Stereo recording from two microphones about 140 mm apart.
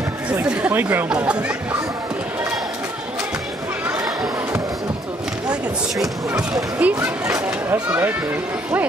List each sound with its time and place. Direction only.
0.4 s speech: 10° right (ahead or behind)
4.0 s a sound: 25° right (ahead or behind)
6.8 s speech: 10° right (ahead or behind)